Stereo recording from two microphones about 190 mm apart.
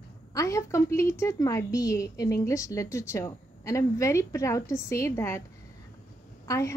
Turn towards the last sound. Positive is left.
turn(degrees=15)  # may be behind; listen again after turning